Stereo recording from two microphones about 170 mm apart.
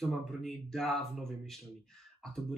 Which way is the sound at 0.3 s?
Centre (ahead or behind).